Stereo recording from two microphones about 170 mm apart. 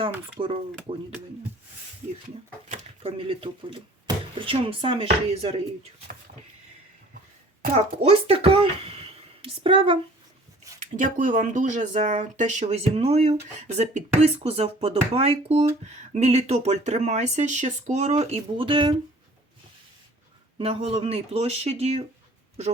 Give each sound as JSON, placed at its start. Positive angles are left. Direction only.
{"t": 0.4, "sound": "speech", "side_deg": -35}
{"t": 2.6, "sound": "speech", "side_deg": -40}
{"t": 8.0, "sound": "speech", "side_deg": -35}
{"t": 10.9, "sound": "speech", "side_deg": -50}
{"t": 20.6, "sound": "speech", "side_deg": -35}